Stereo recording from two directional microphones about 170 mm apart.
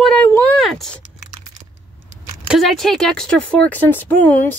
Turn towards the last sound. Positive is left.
turn(degrees=10)  # may be behind; listen again after turning